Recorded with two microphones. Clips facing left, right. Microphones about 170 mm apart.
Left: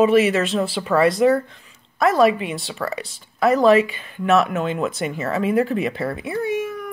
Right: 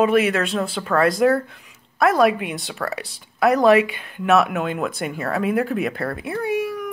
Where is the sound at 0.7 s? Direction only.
5° left (ahead or behind).